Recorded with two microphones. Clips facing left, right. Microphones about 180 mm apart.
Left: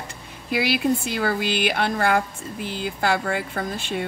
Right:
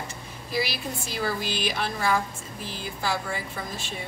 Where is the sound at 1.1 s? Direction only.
60° left (ahead or behind).